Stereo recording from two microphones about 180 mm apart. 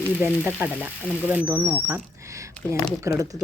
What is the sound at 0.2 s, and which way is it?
Speech, 10° right (ahead or behind).